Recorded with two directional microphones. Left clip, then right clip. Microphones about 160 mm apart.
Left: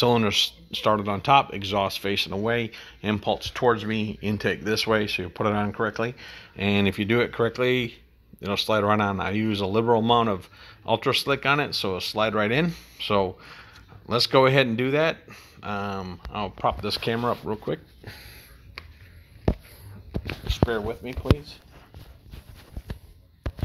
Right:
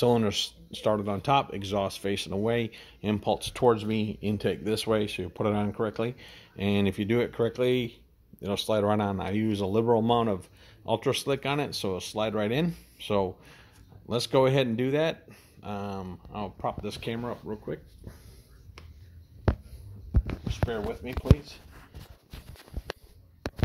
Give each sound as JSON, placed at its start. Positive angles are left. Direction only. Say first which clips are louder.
{"t": 0.0, "sound": "speech", "louder": "left 4 dB", "side_deg": -15}
{"t": 3.3, "sound": "speech", "louder": "even", "side_deg": -45}
{"t": 16.8, "sound": "speech", "louder": "left 9 dB", "side_deg": 15}
{"t": 20.4, "sound": "speech", "louder": "left 6 dB", "side_deg": 55}